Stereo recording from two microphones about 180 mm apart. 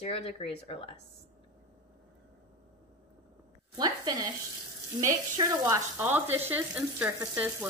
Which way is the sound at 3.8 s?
20° right (ahead or behind).